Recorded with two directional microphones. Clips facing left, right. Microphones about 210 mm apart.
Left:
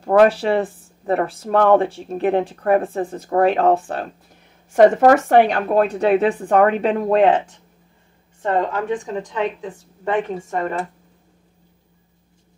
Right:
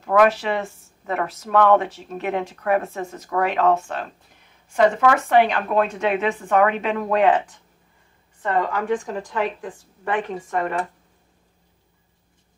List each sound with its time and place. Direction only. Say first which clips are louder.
0.0 s a woman's voice: left 4 dB; 30° left (ahead or behind)